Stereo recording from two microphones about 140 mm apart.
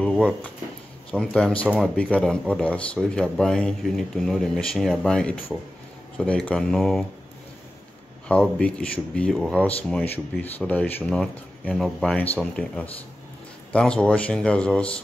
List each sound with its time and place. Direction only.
0.0 s drawer open or close: 5° left (ahead or behind)
1.1 s speech: 5° left (ahead or behind)
8.3 s speech: 10° left (ahead or behind)